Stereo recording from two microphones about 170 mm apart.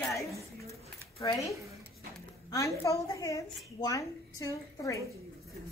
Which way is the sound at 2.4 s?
20° left (ahead or behind).